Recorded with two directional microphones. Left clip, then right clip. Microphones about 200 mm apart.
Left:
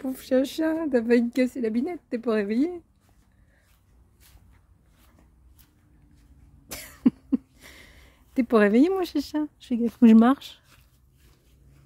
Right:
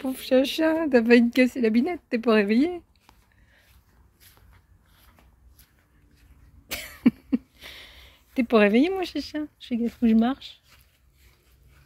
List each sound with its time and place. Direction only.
0.0 s speech: 15° left (ahead or behind); by 2.8 s centre (ahead or behind)
6.7 s cough: 10° left (ahead or behind); by 9.8 s 35° left (ahead or behind)
10.0 s speech: 50° left (ahead or behind)